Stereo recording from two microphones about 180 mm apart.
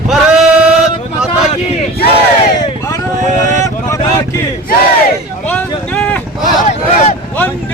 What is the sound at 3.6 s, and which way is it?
Speech, 20° left (ahead or behind).